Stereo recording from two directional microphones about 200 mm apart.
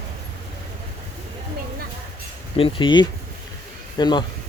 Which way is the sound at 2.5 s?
25° left (ahead or behind).